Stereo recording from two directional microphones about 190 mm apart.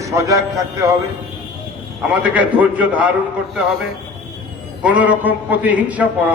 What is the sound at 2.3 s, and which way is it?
Speech, 10° right (ahead or behind).